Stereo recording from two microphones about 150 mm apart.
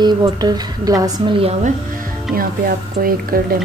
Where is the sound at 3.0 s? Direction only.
75° right (ahead or behind).